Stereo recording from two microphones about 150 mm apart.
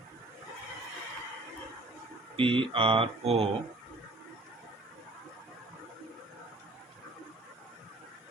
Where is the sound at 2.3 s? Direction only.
35° right (ahead or behind).